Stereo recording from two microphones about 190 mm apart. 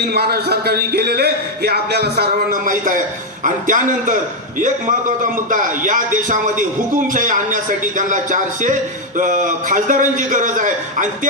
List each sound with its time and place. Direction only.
0.1 s a man's voice: 55° right (ahead or behind)